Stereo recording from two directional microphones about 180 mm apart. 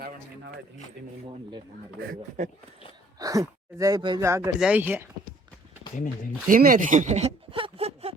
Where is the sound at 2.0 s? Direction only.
55° right (ahead or behind).